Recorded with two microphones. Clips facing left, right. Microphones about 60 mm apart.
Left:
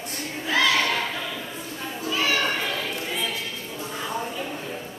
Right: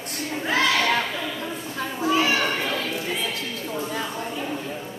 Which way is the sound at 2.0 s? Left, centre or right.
Right.